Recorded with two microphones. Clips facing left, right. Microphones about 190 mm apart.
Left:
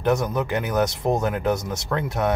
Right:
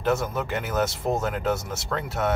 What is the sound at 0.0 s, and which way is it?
Speech, 15° left (ahead or behind).